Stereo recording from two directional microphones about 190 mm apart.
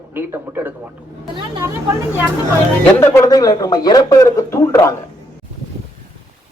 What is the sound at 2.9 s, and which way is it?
Speech, 10° left (ahead or behind).